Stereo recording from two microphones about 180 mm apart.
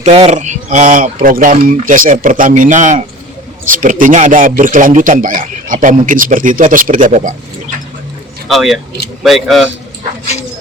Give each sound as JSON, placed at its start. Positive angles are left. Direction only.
{"t": 0.0, "sound": "a man's voice", "side_deg": -35}
{"t": 8.4, "sound": "a man's voice", "side_deg": 0}